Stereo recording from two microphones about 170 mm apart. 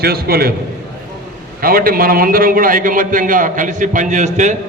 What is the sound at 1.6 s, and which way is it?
A man's voice, 60° right (ahead or behind).